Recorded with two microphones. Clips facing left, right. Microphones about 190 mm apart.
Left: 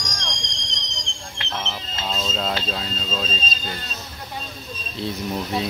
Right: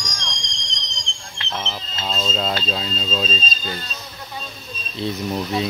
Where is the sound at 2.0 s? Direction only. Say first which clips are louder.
Right 2 dB; 10° left (ahead or behind).